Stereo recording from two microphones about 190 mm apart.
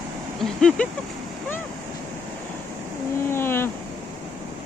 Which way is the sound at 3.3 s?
10° left (ahead or behind).